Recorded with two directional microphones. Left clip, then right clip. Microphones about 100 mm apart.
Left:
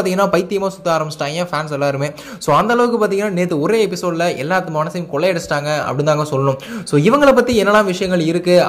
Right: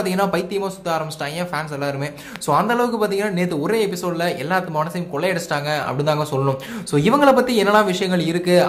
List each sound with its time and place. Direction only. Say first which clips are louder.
0.0 s speech: left 5 dB; 55° left (ahead or behind)